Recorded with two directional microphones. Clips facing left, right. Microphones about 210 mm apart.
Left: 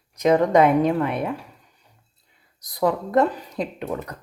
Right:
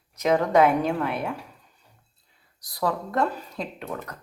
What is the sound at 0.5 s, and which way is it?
Speech, centre (ahead or behind).